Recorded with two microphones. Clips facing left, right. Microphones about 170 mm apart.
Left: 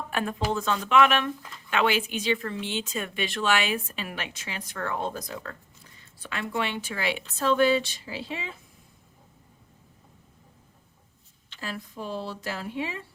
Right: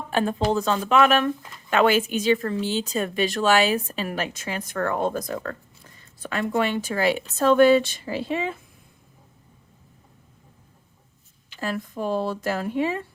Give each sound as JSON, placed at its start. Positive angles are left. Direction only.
{"t": 0.1, "sound": "speech", "side_deg": -30}
{"t": 11.6, "sound": "speech", "side_deg": -50}